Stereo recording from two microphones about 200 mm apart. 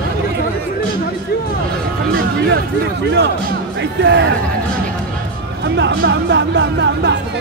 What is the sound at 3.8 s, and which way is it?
Speech, 60° right (ahead or behind).